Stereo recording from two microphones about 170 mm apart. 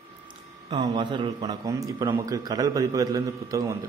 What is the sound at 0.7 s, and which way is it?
A man's voice, 25° right (ahead or behind).